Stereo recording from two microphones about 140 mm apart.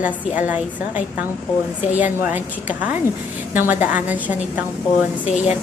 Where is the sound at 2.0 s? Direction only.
10° right (ahead or behind).